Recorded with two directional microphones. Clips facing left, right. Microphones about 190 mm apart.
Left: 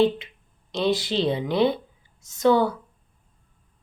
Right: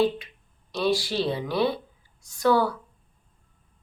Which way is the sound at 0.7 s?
20° left (ahead or behind).